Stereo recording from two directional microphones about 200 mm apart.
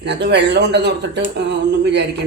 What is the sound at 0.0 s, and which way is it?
A man's voice, 55° right (ahead or behind).